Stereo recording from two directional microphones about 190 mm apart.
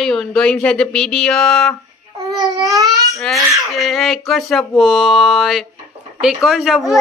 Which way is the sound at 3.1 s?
Centre (ahead or behind).